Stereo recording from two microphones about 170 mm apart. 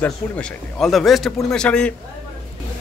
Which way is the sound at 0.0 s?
5° left (ahead or behind).